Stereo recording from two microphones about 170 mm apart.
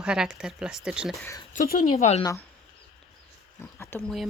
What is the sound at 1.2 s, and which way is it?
Speech, 15° left (ahead or behind).